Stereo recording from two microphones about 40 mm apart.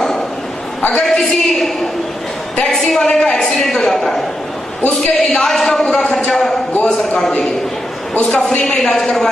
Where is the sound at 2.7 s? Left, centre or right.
Centre.